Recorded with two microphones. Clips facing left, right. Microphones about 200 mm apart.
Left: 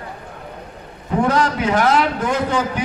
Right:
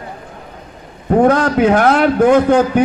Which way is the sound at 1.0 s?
55° right (ahead or behind).